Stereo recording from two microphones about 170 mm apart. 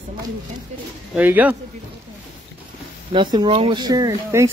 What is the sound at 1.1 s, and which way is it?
Speech, 10° right (ahead or behind).